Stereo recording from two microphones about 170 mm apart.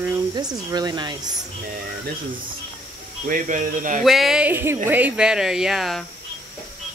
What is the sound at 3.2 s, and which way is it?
Speech, 55° right (ahead or behind).